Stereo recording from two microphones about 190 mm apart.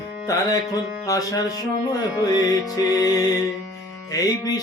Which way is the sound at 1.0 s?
15° left (ahead or behind).